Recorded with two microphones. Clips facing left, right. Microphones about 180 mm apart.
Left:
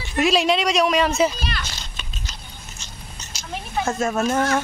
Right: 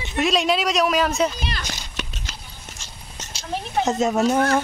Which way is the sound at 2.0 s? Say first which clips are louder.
Right 8 dB; 75° right (ahead or behind).